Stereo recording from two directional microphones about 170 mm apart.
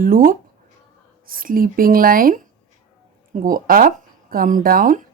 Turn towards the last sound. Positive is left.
turn(degrees=-55)  # may be behind; listen again after turning